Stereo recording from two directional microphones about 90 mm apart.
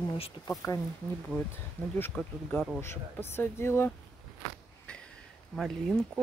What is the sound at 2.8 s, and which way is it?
Speech, 25° left (ahead or behind).